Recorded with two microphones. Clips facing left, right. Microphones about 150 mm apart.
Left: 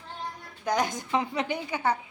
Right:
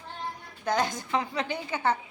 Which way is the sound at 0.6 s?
15° left (ahead or behind).